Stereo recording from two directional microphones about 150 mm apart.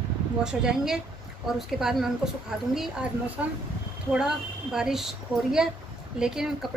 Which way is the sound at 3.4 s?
10° right (ahead or behind).